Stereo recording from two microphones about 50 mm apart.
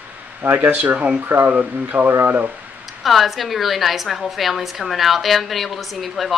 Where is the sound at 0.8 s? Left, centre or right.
Right.